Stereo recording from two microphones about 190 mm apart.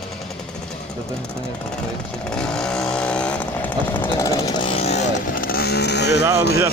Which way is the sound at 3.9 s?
25° left (ahead or behind).